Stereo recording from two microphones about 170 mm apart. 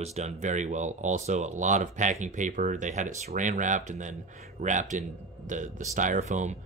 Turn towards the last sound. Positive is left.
turn(degrees=-45)  # may be behind; listen again after turning